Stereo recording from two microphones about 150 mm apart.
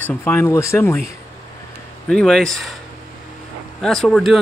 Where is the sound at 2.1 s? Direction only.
5° left (ahead or behind).